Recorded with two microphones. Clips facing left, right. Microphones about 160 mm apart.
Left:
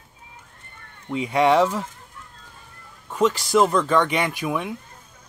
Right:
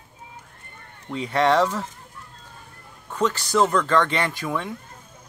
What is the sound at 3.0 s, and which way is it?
Speech, 10° left (ahead or behind).